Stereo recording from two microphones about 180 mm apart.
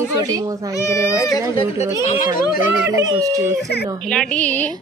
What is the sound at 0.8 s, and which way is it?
Speech, 15° left (ahead or behind).